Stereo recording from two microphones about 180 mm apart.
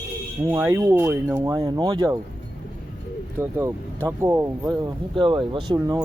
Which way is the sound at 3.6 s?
15° right (ahead or behind).